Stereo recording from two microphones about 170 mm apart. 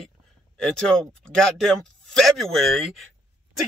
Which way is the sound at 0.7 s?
5° left (ahead or behind).